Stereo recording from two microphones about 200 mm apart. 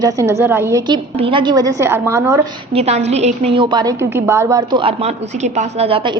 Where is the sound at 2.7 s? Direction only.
30° right (ahead or behind).